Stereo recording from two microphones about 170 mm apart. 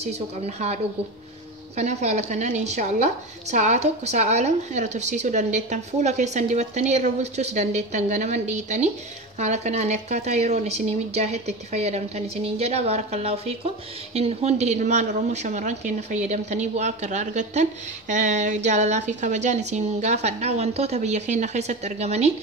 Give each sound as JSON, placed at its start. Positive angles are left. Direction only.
{"t": 0.0, "sound": "speech", "side_deg": -40}
{"t": 1.8, "sound": "a woman's voice", "side_deg": -40}